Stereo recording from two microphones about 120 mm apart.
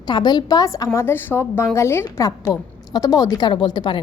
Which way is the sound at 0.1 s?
35° left (ahead or behind).